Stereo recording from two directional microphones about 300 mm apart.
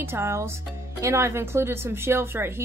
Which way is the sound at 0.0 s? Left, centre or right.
Centre.